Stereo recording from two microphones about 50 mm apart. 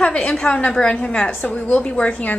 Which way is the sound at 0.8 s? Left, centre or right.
Centre.